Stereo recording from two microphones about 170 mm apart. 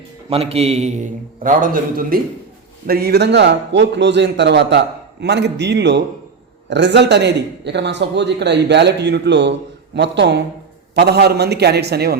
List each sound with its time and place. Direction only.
0.3 s a man's voice: 35° right (ahead or behind); by 2.2 s 55° right (ahead or behind)
2.8 s a man's voice: 65° right (ahead or behind); by 10.4 s 85° right
10.9 s a man's voice: 75° right (ahead or behind)